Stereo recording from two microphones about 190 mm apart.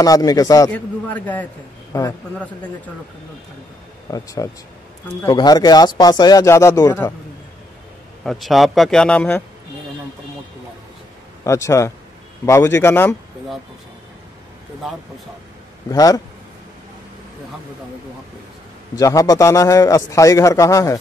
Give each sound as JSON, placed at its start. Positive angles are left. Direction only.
{"t": 0.0, "sound": "speech", "side_deg": 20}
{"t": 0.7, "sound": "a man's voice", "side_deg": 10}
{"t": 4.1, "sound": "a man's voice", "side_deg": 20}
{"t": 8.2, "sound": "a man's voice", "side_deg": 0}
{"t": 11.4, "sound": "a man's voice", "side_deg": 15}
{"t": 15.9, "sound": "speech", "side_deg": 20}
{"t": 18.9, "sound": "a man's voice", "side_deg": 20}